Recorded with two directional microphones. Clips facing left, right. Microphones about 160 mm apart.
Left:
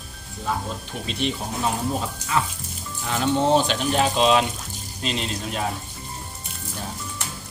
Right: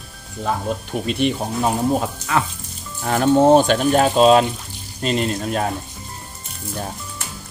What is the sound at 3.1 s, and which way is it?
Speech, 50° right (ahead or behind).